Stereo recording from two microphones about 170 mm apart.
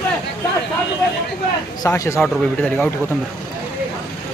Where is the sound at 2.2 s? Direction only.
5° left (ahead or behind).